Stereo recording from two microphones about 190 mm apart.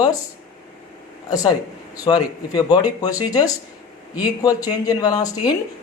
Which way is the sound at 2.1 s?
20° left (ahead or behind).